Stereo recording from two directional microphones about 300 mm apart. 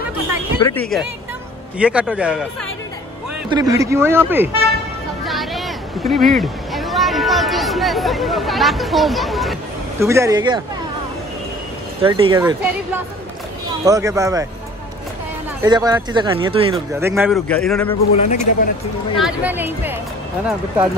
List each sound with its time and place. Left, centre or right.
0.6 s speech: centre
1.8 s a man's voice: centre
3.4 s speech: centre
5.2 s a sound: centre
12.0 s speech: centre
15.6 s speech: centre
16.7 s a man's voice: centre
18.1 s speech: left
19.2 s a man's voice: centre